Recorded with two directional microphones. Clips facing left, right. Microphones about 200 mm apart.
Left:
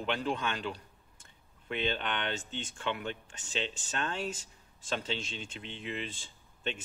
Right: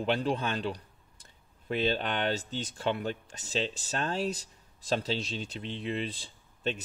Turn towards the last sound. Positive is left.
turn(degrees=-35)  # may be behind; listen again after turning